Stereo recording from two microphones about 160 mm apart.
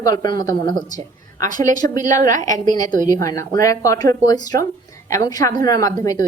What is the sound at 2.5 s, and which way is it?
Speech, 25° left (ahead or behind).